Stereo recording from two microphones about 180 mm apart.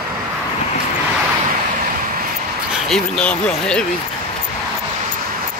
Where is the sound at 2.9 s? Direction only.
5° left (ahead or behind).